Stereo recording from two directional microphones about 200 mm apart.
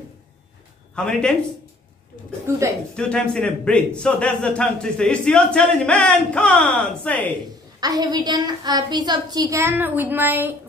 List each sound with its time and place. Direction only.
0.9 s a man's voice: 5° left (ahead or behind)
2.5 s speech: 15° right (ahead or behind)
3.0 s a man's voice: 5° left (ahead or behind)
7.8 s a woman's voice: 20° right (ahead or behind)